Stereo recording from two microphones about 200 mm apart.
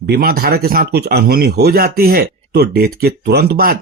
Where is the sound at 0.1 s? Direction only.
50° right (ahead or behind).